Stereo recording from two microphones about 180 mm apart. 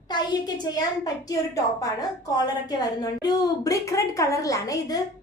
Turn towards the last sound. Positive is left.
turn(degrees=20)  # may be behind; listen again after turning